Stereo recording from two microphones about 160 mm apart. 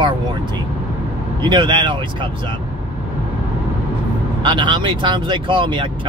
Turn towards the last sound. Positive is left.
turn(degrees=-30)  # may be behind; listen again after turning